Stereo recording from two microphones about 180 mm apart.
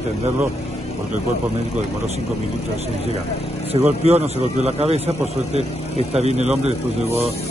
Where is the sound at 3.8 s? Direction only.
35° right (ahead or behind).